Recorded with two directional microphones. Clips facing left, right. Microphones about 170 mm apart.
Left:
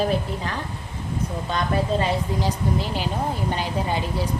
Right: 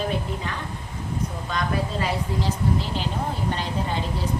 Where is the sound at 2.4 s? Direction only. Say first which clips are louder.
Left 1 dB; 15° left (ahead or behind).